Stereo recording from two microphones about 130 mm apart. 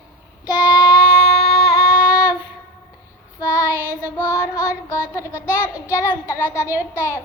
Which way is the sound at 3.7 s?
20° right (ahead or behind).